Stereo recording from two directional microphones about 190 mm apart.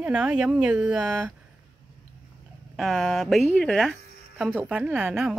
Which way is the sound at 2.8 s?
Centre (ahead or behind).